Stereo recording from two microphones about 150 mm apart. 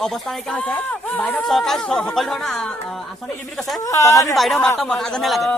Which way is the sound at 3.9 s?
20° left (ahead or behind).